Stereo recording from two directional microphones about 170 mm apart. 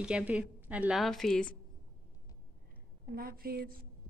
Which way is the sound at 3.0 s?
60° right (ahead or behind).